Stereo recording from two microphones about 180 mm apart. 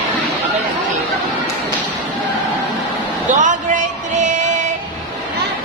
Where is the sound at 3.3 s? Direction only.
45° right (ahead or behind).